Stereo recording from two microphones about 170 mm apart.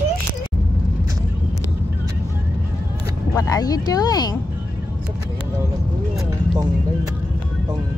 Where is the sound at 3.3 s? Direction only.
20° left (ahead or behind).